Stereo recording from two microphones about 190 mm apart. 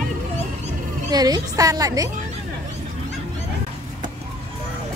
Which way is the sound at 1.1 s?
20° right (ahead or behind).